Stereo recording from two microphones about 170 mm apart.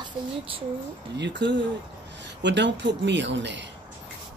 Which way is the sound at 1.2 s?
90° right.